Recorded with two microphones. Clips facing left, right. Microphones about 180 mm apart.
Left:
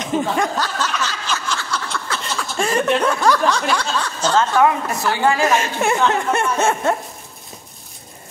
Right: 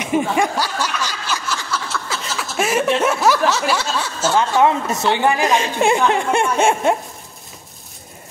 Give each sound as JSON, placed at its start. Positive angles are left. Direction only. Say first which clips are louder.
{"t": 0.0, "sound": "snicker", "louder": "right 2 dB", "side_deg": -10}
{"t": 4.6, "sound": "speech", "louder": "right 1 dB", "side_deg": -20}